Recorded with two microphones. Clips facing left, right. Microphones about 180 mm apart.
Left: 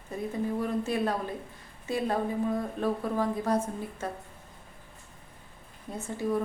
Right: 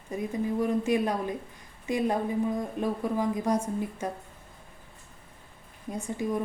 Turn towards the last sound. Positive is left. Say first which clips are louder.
# right 2 dB
turn(degrees=-15)  # may be behind; listen again after turning